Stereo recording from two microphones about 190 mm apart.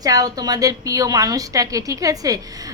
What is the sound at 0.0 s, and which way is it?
A woman's voice, 20° right (ahead or behind).